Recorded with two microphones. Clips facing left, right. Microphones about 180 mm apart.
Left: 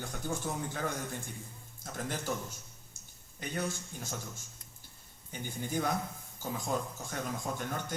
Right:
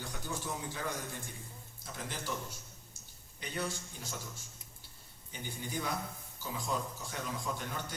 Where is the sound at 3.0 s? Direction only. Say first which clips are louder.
Even; 50° left (ahead or behind).